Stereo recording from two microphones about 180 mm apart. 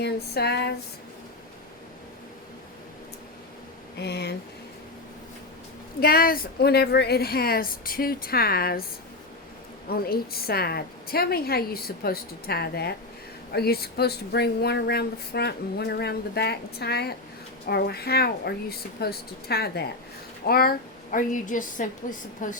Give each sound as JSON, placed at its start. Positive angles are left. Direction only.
{"t": 0.0, "sound": "a sound", "side_deg": 65}
{"t": 3.9, "sound": "speech", "side_deg": 65}
{"t": 6.0, "sound": "speech", "side_deg": 55}
{"t": 9.9, "sound": "a woman's voice", "side_deg": 60}